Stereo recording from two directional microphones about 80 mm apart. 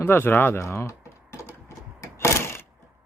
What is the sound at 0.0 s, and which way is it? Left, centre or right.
Typing, left.